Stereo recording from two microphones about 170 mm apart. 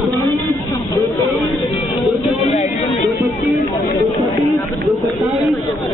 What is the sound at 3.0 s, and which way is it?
Speech, centre (ahead or behind).